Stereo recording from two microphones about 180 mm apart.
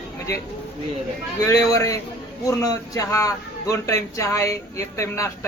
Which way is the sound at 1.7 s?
20° left (ahead or behind).